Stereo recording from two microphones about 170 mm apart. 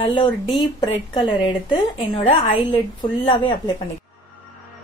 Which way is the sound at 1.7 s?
25° left (ahead or behind).